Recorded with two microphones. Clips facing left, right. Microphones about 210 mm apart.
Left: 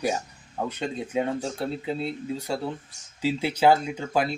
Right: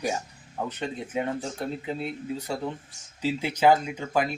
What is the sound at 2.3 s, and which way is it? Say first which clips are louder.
Speech: left 2 dB; 10° left (ahead or behind).